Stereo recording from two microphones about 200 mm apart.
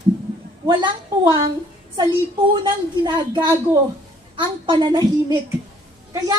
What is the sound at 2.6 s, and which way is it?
A woman's voice, 20° right (ahead or behind).